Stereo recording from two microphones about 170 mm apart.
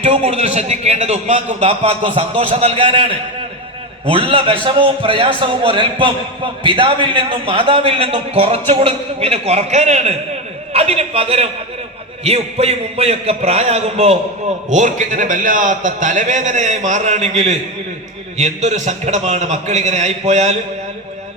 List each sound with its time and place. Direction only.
0.0 s a man's voice: 35° right (ahead or behind)